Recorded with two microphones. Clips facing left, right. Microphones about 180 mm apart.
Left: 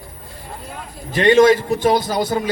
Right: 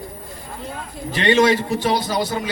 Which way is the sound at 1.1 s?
50° left (ahead or behind).